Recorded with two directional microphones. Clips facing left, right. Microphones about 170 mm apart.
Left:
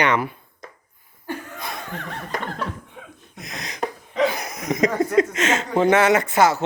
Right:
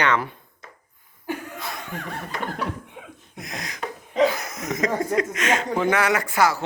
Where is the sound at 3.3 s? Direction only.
20° left (ahead or behind).